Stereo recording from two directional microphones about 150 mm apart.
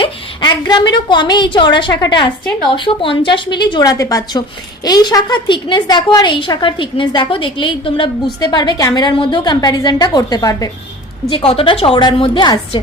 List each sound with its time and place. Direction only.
0.0 s a woman's voice: 30° left (ahead or behind)
11.3 s a woman's voice: 40° left (ahead or behind)